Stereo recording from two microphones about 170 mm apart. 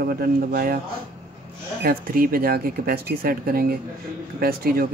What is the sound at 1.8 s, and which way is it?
Speech, 60° right (ahead or behind).